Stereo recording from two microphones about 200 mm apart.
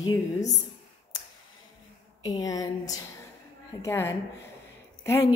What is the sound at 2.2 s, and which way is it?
A woman's voice, 20° left (ahead or behind).